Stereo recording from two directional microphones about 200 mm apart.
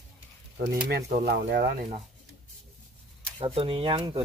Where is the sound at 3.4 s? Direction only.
25° right (ahead or behind).